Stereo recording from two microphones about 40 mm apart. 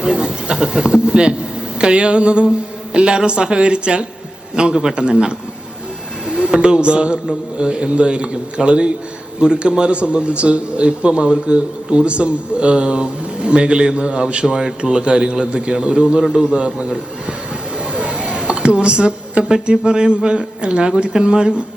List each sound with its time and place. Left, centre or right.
0.0 s a man's voice: right
6.3 s a man's voice: right
16.3 s a man's voice: centre
16.6 s a man's voice: right
17.9 s a sound: right
19.6 s a man's voice: right